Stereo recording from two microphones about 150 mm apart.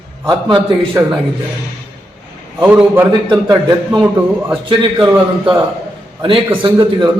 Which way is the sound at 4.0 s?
15° right (ahead or behind).